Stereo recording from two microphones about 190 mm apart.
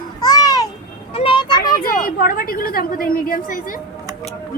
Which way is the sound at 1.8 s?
50° left (ahead or behind).